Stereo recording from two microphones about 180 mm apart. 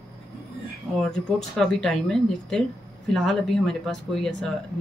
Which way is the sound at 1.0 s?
5° left (ahead or behind).